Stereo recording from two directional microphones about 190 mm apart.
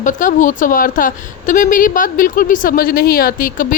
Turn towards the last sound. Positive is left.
turn(degrees=45)  # may be behind; listen again after turning